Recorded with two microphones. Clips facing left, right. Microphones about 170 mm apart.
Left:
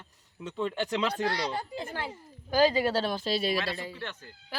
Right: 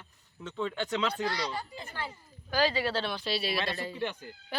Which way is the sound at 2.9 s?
45° left (ahead or behind).